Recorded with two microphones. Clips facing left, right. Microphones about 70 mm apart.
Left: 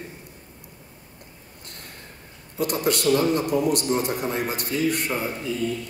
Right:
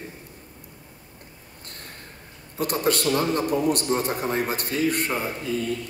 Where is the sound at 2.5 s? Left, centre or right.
Right.